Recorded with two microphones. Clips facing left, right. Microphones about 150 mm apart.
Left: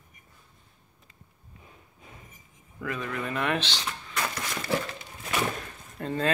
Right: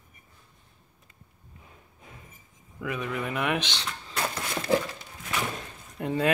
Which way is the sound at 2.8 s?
15° right (ahead or behind).